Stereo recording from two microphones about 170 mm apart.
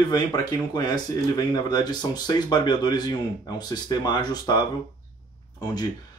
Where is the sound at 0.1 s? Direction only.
25° left (ahead or behind).